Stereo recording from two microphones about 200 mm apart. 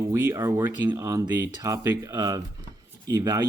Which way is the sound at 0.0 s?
15° right (ahead or behind).